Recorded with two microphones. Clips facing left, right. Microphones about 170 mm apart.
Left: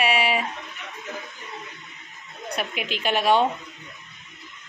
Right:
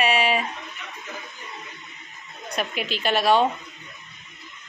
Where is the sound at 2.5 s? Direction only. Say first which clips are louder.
Right 2 dB; 15° left (ahead or behind).